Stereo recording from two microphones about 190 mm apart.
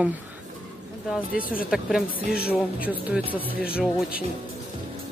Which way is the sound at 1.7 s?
5° right (ahead or behind).